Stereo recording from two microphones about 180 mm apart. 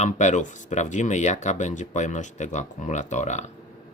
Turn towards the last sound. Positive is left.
turn(degrees=40)  # may be behind; listen again after turning